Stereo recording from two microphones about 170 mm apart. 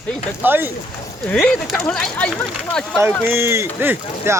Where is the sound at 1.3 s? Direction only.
5° left (ahead or behind).